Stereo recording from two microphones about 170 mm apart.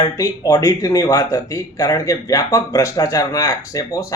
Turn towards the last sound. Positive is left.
turn(degrees=20)  # may be behind; listen again after turning